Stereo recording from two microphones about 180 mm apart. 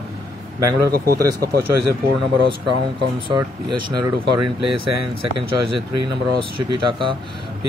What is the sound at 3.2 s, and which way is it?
Speech, 25° right (ahead or behind).